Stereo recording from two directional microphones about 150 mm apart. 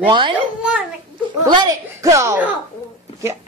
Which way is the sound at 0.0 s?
35° right (ahead or behind).